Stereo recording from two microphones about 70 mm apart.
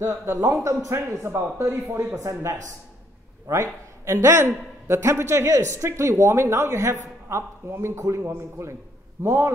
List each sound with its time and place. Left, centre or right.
0.0 s a man's voice: right